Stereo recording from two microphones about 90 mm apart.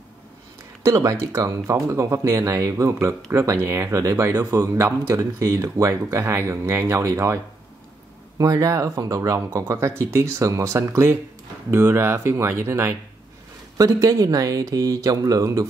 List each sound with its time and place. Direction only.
0.8 s speech: 35° right (ahead or behind)
8.4 s speech: 40° right (ahead or behind)
14.0 s speech: 40° right (ahead or behind)